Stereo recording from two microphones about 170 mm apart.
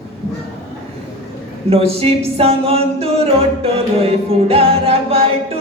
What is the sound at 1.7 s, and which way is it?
Music, 35° right (ahead or behind).